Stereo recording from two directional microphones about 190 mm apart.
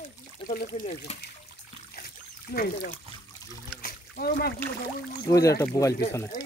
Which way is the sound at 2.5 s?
55° left (ahead or behind).